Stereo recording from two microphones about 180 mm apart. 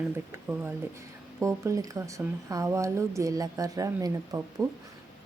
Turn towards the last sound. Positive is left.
turn(degrees=-20)  # may be behind; listen again after turning